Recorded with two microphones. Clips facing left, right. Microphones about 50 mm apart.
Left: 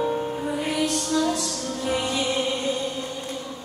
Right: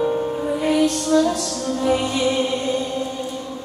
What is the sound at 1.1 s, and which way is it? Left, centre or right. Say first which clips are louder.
Music: right 6 dB; centre.